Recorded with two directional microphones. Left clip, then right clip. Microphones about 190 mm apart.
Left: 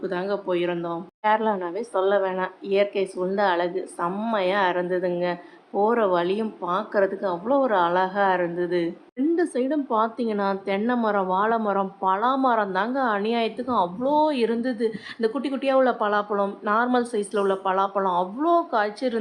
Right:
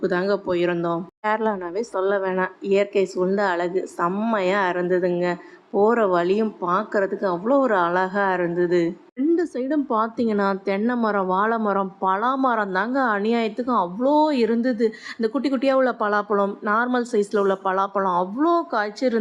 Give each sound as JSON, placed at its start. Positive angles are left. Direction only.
{"t": 0.0, "sound": "a woman's voice", "side_deg": -25}